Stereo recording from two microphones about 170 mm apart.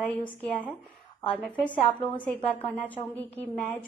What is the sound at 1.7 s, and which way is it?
Speech, 30° left (ahead or behind).